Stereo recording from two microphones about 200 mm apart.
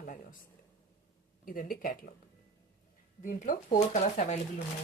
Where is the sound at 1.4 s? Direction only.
45° left (ahead or behind).